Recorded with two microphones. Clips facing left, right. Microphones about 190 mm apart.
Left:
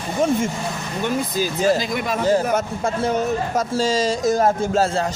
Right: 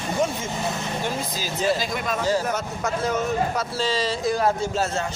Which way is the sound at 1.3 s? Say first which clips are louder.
Left 5 dB; 55° left (ahead or behind).